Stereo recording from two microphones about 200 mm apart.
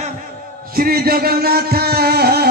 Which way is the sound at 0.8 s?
50° right (ahead or behind).